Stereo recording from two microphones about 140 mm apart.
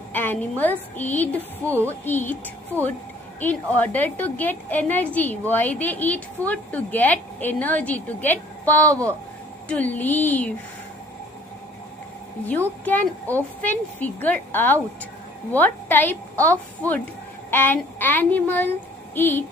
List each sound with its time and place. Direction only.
0.1 s a woman's voice: 15° left (ahead or behind)
2.7 s speech: 15° right (ahead or behind)
3.3 s a woman's voice: 10° left (ahead or behind)
12.4 s a woman's voice: 10° left (ahead or behind)